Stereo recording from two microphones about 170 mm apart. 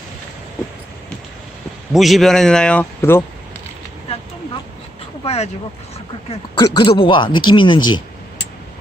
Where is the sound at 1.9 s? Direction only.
Centre (ahead or behind).